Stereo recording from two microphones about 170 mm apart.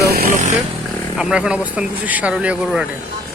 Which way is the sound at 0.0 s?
65° right (ahead or behind).